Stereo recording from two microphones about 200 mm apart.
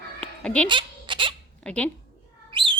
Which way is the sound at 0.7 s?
25° right (ahead or behind).